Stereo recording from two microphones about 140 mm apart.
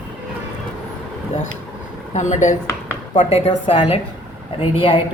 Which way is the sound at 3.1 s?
45° left (ahead or behind).